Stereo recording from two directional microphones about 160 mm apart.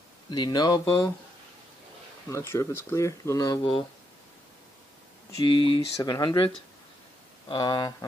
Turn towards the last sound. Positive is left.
turn(degrees=25)  # may be behind; listen again after turning